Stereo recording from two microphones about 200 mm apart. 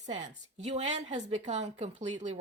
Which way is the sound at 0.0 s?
35° right (ahead or behind).